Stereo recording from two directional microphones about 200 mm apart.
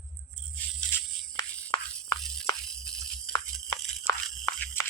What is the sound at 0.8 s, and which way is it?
Music, 5° left (ahead or behind).